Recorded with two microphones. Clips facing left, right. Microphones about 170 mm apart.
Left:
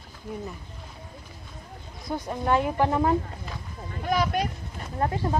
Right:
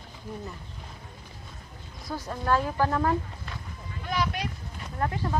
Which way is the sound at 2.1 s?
20° left (ahead or behind).